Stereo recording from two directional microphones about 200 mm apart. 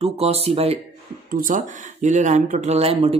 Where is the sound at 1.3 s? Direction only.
45° right (ahead or behind).